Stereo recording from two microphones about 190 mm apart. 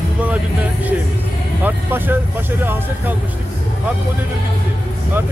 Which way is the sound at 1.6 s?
10° right (ahead or behind).